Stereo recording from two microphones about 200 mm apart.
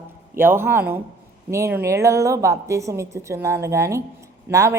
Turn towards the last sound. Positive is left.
turn(degrees=-15)  # may be behind; listen again after turning